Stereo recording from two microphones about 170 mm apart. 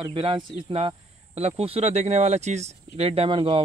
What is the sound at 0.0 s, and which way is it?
Speech, 30° right (ahead or behind).